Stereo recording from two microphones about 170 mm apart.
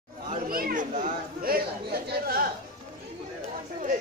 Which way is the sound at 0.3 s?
60° right (ahead or behind).